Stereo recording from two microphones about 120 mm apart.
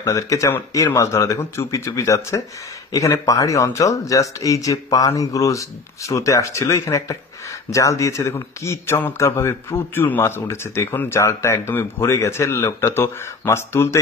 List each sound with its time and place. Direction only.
0.0 s a man's voice: 25° left (ahead or behind)